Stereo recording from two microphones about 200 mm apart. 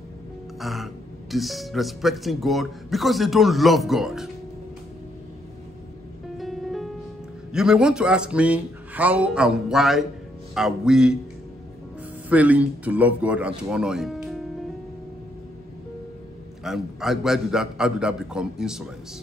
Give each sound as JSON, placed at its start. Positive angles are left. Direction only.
{"t": 0.6, "sound": "speech", "side_deg": 0}
{"t": 6.3, "sound": "music", "side_deg": 0}
{"t": 7.5, "sound": "speech", "side_deg": -5}
{"t": 12.3, "sound": "a man's voice", "side_deg": -5}
{"t": 16.6, "sound": "speech", "side_deg": 0}